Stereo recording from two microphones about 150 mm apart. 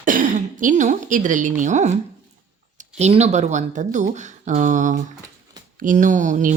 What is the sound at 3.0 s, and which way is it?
Speech, 45° right (ahead or behind).